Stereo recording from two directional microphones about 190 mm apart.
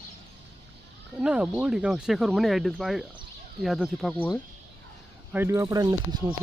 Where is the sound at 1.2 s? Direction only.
5° right (ahead or behind).